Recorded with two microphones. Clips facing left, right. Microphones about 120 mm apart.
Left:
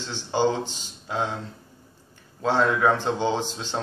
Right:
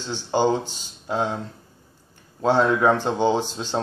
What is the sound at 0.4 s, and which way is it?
Speech, 15° right (ahead or behind).